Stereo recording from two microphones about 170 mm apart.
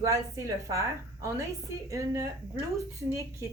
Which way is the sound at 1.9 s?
20° right (ahead or behind).